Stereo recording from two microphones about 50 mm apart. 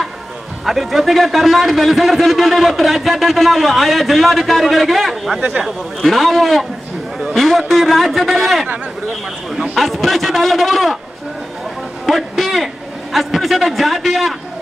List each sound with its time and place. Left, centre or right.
0.7 s a man's voice: centre
9.8 s a man's voice: centre
12.1 s a sound: centre
13.1 s a man's voice: centre